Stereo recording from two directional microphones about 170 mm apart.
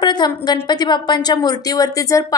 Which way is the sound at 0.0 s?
25° left (ahead or behind).